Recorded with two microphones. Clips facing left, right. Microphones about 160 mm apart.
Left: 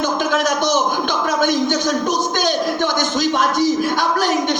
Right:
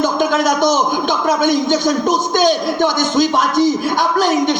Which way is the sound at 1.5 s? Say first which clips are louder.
Right 3 dB; 45° right (ahead or behind).